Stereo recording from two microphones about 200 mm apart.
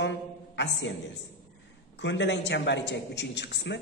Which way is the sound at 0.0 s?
65° left (ahead or behind).